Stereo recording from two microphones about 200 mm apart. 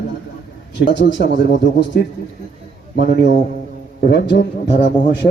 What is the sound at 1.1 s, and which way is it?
Speech, 60° left (ahead or behind).